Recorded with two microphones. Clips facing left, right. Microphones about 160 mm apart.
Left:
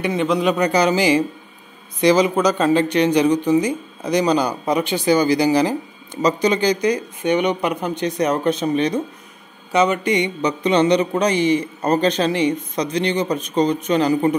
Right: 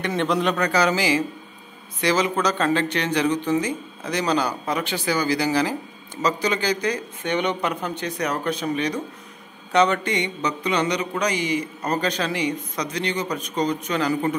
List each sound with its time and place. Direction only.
0.0 s a man's voice: 5° left (ahead or behind)
0.7 s a man's voice: 20° left (ahead or behind)
9.7 s a man's voice: 5° left (ahead or behind)